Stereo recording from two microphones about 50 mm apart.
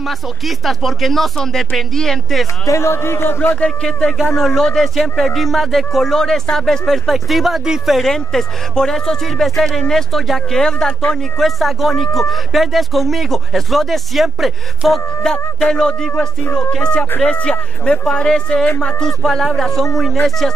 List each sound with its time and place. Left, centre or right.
0.0 s speech: centre
2.7 s a man's voice: left
4.5 s speech: centre
7.6 s speech: centre
7.9 s speech: centre
11.3 s speech: centre
15.2 s speech: centre